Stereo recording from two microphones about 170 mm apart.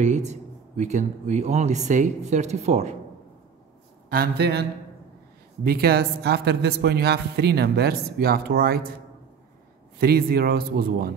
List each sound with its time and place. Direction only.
0.0 s speech: 40° right (ahead or behind)
4.1 s a man's voice: 65° right (ahead or behind)
9.9 s speech: 65° right (ahead or behind)